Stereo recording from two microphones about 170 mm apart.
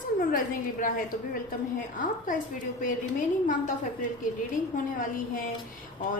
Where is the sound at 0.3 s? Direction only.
55° left (ahead or behind).